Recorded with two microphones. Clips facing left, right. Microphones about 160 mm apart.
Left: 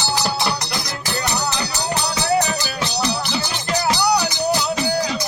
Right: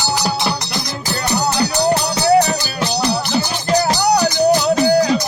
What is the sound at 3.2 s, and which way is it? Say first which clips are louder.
Music: right 5 dB; 45° right (ahead or behind).